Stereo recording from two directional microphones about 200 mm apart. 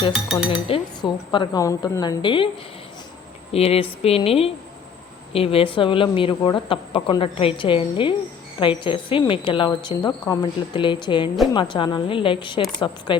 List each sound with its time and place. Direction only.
0.3 s speech: 25° left (ahead or behind)
3.5 s speech: 30° left (ahead or behind)